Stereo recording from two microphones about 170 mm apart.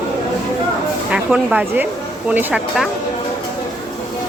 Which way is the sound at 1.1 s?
5° right (ahead or behind).